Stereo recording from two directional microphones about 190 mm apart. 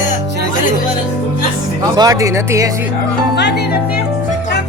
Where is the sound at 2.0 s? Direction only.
15° right (ahead or behind).